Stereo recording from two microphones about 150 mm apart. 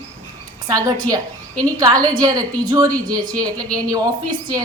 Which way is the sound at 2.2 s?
25° right (ahead or behind).